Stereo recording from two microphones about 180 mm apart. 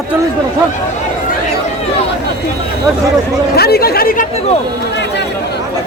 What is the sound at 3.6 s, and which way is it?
Speech, 60° left (ahead or behind).